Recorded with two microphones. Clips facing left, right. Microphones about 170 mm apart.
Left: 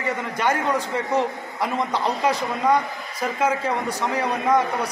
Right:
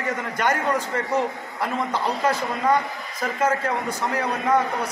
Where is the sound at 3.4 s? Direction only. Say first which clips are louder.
Even; 10° left (ahead or behind).